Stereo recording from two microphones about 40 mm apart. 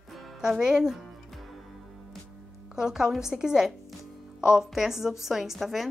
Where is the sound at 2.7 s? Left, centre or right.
Centre.